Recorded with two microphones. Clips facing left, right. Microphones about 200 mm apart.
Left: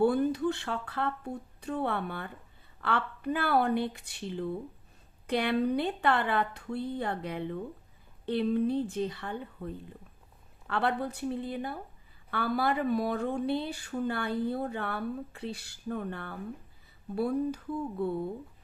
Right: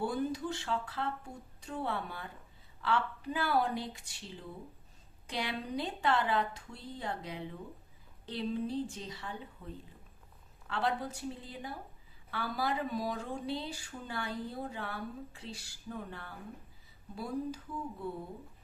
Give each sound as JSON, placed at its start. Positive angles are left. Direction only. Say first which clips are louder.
{"t": 0.0, "sound": "speech", "louder": "left 8 dB", "side_deg": 60}